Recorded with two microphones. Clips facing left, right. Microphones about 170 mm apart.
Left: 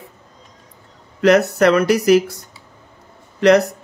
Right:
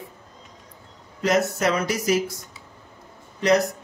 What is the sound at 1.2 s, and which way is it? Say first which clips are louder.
Speech: left 8 dB; 70° left (ahead or behind).